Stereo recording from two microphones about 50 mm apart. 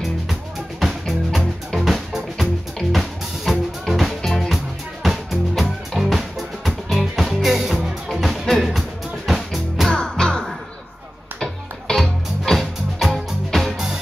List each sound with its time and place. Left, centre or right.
0.3 s music: centre
9.8 s music: centre